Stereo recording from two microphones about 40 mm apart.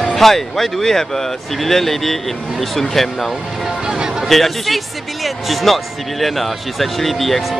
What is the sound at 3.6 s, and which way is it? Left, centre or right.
Music, centre.